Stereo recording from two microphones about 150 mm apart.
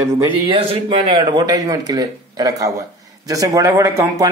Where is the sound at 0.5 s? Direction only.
35° right (ahead or behind).